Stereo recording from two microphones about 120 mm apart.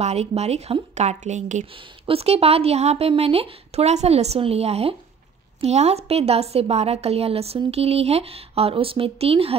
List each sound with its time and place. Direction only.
0.0 s a woman's voice: 60° right (ahead or behind)
0.9 s a woman's voice: 75° right (ahead or behind)
2.0 s a woman's voice: 55° right (ahead or behind)